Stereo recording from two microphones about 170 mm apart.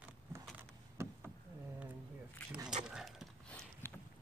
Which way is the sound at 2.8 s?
5° right (ahead or behind).